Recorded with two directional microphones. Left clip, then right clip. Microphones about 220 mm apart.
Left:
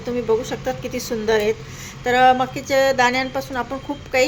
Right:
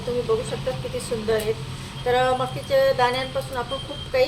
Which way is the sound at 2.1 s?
45° left (ahead or behind).